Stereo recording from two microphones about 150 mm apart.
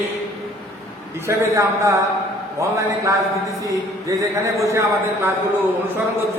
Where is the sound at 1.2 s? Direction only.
20° right (ahead or behind).